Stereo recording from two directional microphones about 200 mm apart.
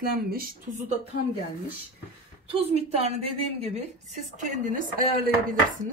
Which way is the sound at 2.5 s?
30° right (ahead or behind).